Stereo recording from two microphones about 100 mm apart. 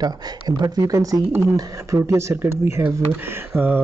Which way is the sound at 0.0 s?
40° right (ahead or behind).